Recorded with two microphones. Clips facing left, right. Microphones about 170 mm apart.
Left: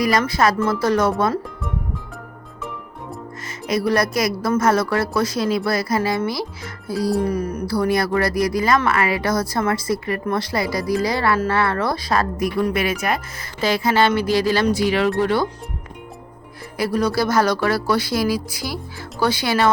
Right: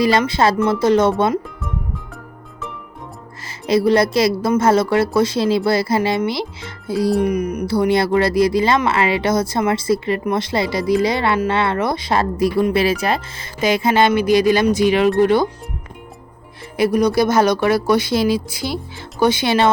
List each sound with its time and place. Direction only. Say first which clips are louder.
0.0 s speech: right 3 dB; 25° right (ahead or behind)
3.7 s speech: right 5 dB; 25° right (ahead or behind)
16.7 s speech: right 5 dB; 20° right (ahead or behind)